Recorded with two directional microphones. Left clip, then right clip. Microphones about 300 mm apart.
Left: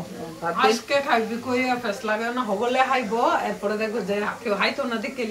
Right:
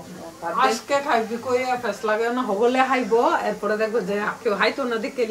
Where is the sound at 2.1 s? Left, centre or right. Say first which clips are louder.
Right 3 dB; right.